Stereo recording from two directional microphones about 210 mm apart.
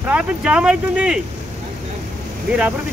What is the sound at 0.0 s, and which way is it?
Speech, 5° right (ahead or behind).